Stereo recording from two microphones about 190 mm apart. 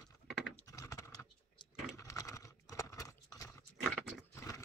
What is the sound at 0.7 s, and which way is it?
Typing, 15° left (ahead or behind).